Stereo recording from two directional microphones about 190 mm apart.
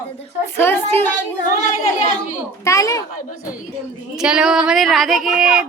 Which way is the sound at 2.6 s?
15° left (ahead or behind).